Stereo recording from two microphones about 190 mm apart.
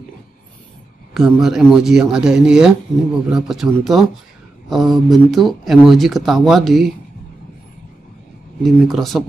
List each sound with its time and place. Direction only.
1.1 s speech: centre (ahead or behind)
8.6 s speech: centre (ahead or behind)